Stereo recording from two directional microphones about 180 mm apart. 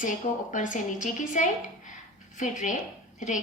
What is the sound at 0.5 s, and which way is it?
A woman's voice, 45° left (ahead or behind).